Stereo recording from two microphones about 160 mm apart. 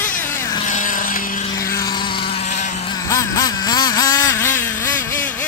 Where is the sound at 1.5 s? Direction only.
20° left (ahead or behind); by 2.8 s 50° left (ahead or behind).